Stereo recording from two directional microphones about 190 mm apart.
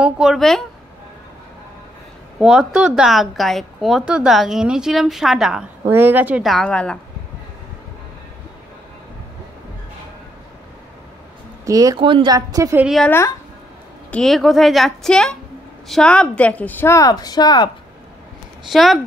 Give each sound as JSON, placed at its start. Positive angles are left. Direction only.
{"t": 0.0, "sound": "a woman's voice", "side_deg": -5}
{"t": 2.3, "sound": "a woman's voice", "side_deg": -5}
{"t": 11.6, "sound": "a woman's voice", "side_deg": -20}
{"t": 12.8, "sound": "a woman's voice", "side_deg": 0}
{"t": 14.1, "sound": "a woman's voice", "side_deg": 0}
{"t": 18.7, "sound": "a woman's voice", "side_deg": 0}